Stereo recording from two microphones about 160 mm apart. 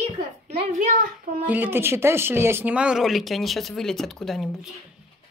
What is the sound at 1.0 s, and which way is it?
Speech, 60° right (ahead or behind).